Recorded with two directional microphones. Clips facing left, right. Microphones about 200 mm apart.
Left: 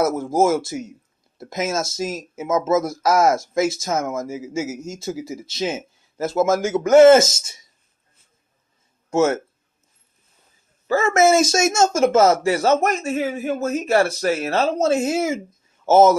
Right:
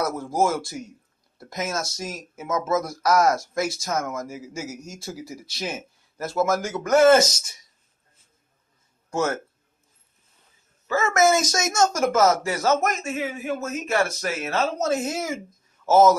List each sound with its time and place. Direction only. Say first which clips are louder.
0.0 s speech: left 5 dB; 25° left (ahead or behind)
9.1 s speech: left 7 dB; 25° left (ahead or behind)
10.9 s a man's voice: left 4 dB; 30° left (ahead or behind)